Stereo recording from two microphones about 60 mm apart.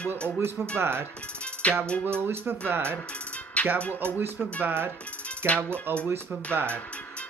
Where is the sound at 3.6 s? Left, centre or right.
Left.